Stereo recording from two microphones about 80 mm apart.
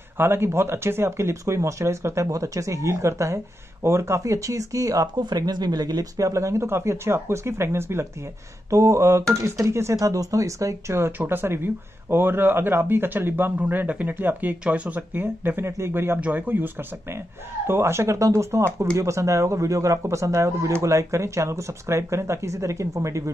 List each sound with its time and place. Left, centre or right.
0.2 s speech: right
5.1 s speech: right